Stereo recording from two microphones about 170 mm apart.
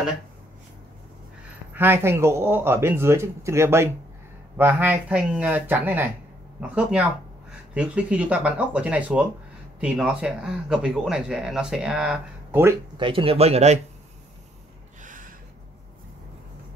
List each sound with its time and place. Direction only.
1.7 s speech: 10° right (ahead or behind)
12.9 s speech: 30° right (ahead or behind)
15.0 s a sound: 50° right (ahead or behind)